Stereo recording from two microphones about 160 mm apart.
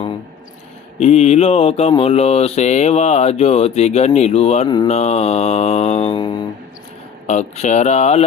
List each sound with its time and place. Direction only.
0.9 s a sound: 45° left (ahead or behind)
4.9 s mantra: 40° left (ahead or behind)
7.3 s mantra: 45° left (ahead or behind)